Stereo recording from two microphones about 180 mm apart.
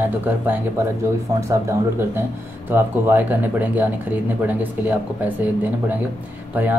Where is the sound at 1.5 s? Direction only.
15° right (ahead or behind).